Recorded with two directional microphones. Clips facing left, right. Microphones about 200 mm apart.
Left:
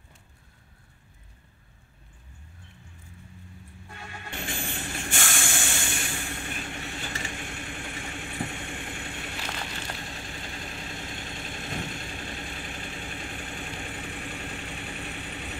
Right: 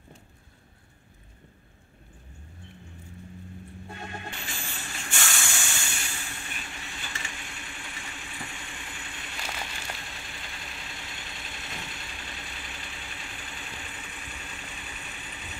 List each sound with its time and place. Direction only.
4.4 s hiss: 50° left (ahead or behind)
10.0 s vehicle: 30° left (ahead or behind); by 15.5 s 60° left (ahead or behind)